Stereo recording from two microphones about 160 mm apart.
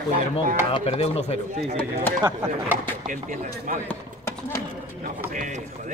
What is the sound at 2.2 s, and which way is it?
Speech, 25° right (ahead or behind).